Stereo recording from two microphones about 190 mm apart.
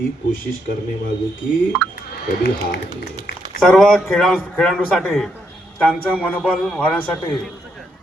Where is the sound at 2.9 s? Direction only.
20° right (ahead or behind).